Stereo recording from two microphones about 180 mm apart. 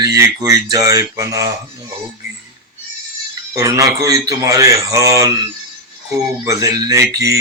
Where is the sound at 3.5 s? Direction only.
20° right (ahead or behind).